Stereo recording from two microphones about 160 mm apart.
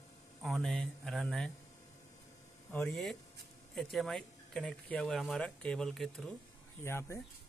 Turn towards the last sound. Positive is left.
turn(degrees=15)  # may be behind; listen again after turning